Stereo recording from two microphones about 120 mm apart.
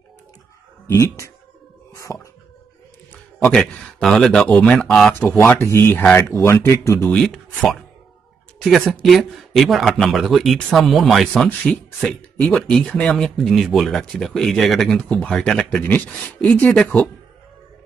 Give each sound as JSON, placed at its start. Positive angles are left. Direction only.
{"t": 0.8, "sound": "speech", "side_deg": 25}
{"t": 2.1, "sound": "a sound", "side_deg": 20}
{"t": 3.4, "sound": "speech", "side_deg": 5}
{"t": 5.1, "sound": "speech", "side_deg": 15}
{"t": 7.1, "sound": "speech", "side_deg": 5}
{"t": 8.5, "sound": "speech", "side_deg": 5}